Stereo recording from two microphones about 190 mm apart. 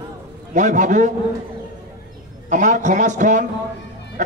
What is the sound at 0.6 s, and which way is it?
Speech, 40° right (ahead or behind).